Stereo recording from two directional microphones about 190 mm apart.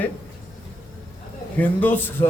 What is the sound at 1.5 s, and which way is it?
Speech, 10° left (ahead or behind).